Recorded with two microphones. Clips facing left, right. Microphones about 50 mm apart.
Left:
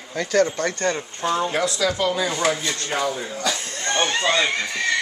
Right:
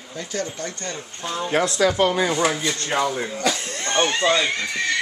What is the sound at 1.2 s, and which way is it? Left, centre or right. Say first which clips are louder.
Speech: left 7 dB; centre.